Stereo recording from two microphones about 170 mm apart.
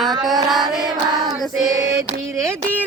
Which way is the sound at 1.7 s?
20° right (ahead or behind).